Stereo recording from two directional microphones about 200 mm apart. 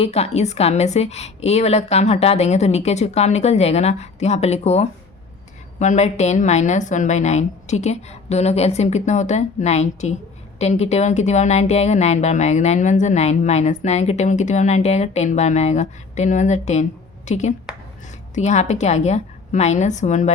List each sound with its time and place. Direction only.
0.0 s a woman's voice: 30° left (ahead or behind)